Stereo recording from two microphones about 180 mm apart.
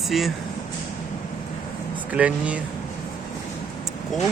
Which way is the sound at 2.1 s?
5° right (ahead or behind).